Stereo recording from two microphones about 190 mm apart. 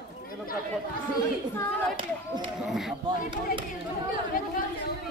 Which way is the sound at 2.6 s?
Centre (ahead or behind).